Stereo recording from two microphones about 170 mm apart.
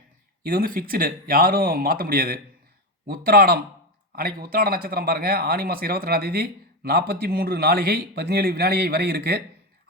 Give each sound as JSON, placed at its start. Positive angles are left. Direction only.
{"t": 0.4, "sound": "speech", "side_deg": -60}